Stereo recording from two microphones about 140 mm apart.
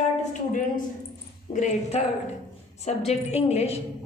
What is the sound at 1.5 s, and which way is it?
A woman's voice, 55° left (ahead or behind).